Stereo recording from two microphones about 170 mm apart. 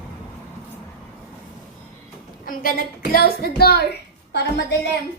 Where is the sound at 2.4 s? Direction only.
55° left (ahead or behind).